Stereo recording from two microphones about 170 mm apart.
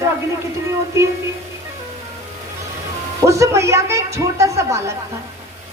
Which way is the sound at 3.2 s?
20° right (ahead or behind).